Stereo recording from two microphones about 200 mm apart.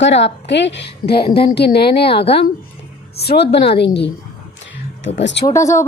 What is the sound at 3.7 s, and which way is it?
Speech, 60° left (ahead or behind).